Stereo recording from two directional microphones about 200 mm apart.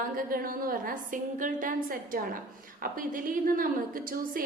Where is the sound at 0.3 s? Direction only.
45° right (ahead or behind).